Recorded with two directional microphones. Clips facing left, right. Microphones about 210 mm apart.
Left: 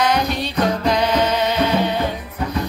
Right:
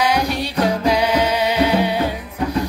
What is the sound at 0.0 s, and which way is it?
Music, 10° right (ahead or behind).